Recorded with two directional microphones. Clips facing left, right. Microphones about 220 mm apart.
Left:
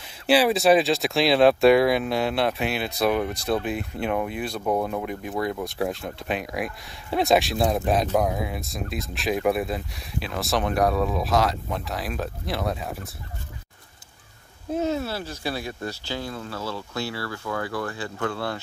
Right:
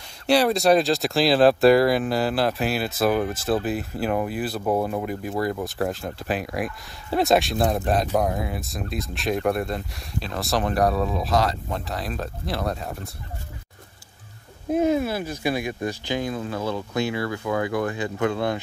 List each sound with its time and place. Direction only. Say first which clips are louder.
0.3 s speech: even; 5° left (ahead or behind)
14.7 s speech: right 5 dB; 15° right (ahead or behind)